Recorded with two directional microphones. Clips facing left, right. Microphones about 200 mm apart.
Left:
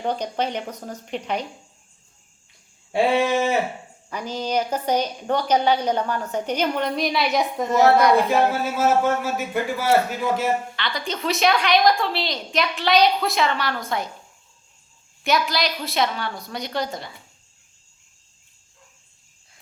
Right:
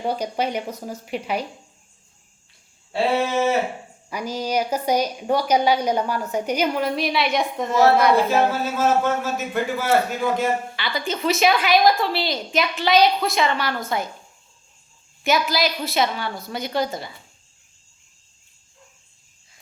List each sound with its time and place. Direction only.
0.0 s a woman's voice: 10° right (ahead or behind)
2.9 s a man's voice: 15° left (ahead or behind)
4.1 s a woman's voice: 10° right (ahead or behind)
8.6 s a man's voice: 10° left (ahead or behind)
10.8 s a woman's voice: 5° right (ahead or behind)
15.2 s a woman's voice: centre (ahead or behind)